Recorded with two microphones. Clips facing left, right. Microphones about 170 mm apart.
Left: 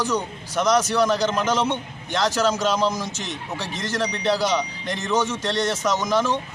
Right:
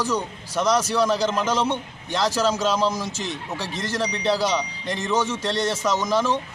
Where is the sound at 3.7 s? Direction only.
35° right (ahead or behind).